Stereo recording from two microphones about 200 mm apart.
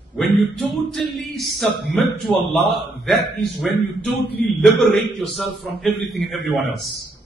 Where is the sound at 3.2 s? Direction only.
55° left (ahead or behind).